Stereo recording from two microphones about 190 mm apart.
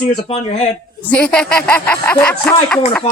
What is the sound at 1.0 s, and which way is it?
Speech, 5° left (ahead or behind).